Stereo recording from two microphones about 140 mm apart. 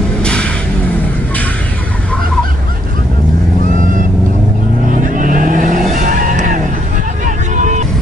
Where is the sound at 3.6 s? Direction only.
70° right (ahead or behind).